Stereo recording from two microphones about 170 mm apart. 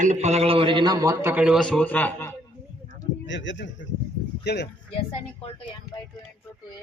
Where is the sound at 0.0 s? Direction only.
40° right (ahead or behind); by 2.3 s 10° left (ahead or behind).